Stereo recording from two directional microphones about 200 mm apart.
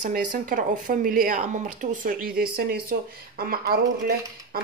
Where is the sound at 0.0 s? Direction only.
40° right (ahead or behind).